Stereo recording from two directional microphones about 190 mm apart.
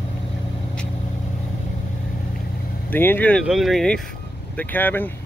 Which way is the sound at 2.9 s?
10° left (ahead or behind).